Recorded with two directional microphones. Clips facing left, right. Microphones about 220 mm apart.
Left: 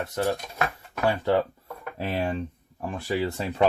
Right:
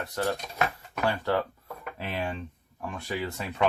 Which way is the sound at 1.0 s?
25° left (ahead or behind).